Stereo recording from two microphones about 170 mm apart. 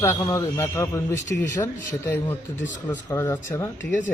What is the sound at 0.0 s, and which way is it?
Speech, 15° left (ahead or behind).